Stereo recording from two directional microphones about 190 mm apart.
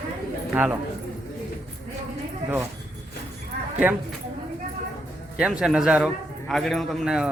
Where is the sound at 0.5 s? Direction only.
10° right (ahead or behind).